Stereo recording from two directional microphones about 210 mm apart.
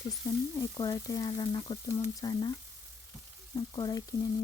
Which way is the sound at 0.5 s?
15° left (ahead or behind).